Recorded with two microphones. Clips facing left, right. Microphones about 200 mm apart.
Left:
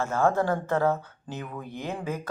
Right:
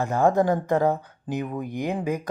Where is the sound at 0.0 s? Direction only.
15° right (ahead or behind).